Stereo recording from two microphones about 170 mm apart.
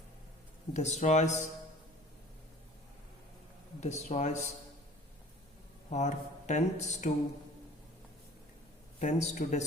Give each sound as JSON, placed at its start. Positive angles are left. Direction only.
{"t": 0.7, "sound": "speech", "side_deg": 40}
{"t": 3.8, "sound": "speech", "side_deg": 45}
{"t": 5.9, "sound": "speech", "side_deg": 45}
{"t": 9.0, "sound": "speech", "side_deg": 45}